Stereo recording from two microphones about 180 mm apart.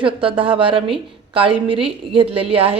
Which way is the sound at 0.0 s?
30° right (ahead or behind).